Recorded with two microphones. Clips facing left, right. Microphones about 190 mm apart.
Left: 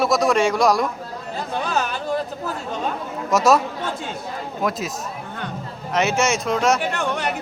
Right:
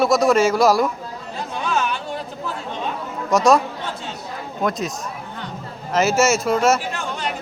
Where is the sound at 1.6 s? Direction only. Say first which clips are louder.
Right 2 dB; 40° left (ahead or behind).